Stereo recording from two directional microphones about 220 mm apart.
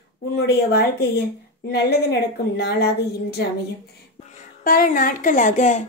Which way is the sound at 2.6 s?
50° left (ahead or behind).